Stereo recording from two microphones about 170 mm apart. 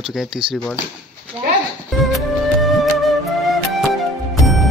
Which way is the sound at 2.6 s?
Centre (ahead or behind).